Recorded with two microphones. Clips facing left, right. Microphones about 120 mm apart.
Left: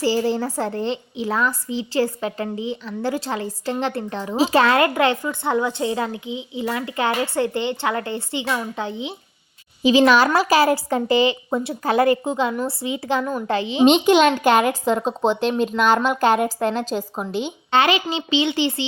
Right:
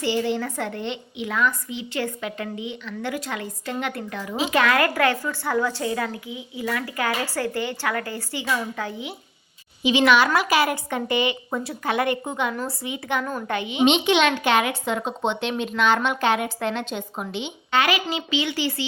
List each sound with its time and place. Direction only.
0.0 s speech: 35° left (ahead or behind)
9.8 s speech: 40° left (ahead or behind)
17.7 s speech: 25° left (ahead or behind)